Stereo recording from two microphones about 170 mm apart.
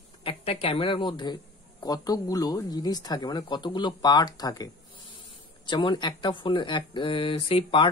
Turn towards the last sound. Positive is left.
turn(degrees=30)  # may be behind; listen again after turning